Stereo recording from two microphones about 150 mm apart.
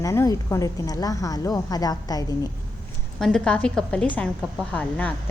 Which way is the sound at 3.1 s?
5° left (ahead or behind).